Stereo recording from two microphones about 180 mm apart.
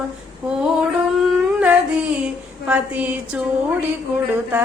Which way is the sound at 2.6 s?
10° right (ahead or behind).